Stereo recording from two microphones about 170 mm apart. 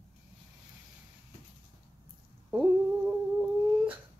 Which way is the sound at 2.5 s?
10° right (ahead or behind).